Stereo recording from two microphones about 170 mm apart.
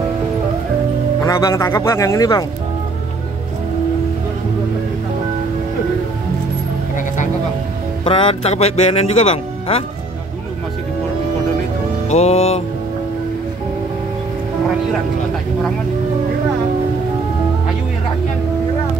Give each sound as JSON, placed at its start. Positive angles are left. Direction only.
{"t": 1.2, "sound": "speech", "side_deg": 20}
{"t": 8.0, "sound": "speech", "side_deg": 30}
{"t": 12.1, "sound": "speech", "side_deg": 35}